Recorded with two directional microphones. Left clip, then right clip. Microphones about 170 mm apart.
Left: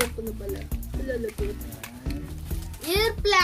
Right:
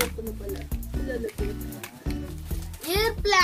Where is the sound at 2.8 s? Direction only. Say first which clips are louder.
Left 1 dB; 5° left (ahead or behind).